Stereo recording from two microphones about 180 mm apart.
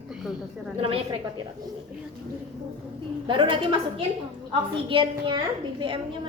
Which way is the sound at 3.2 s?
25° right (ahead or behind).